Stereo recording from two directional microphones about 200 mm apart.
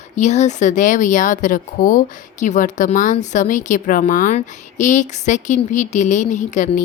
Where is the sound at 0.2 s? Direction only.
35° left (ahead or behind).